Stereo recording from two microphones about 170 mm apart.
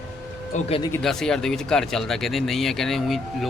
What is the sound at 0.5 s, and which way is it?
Speech, 45° left (ahead or behind).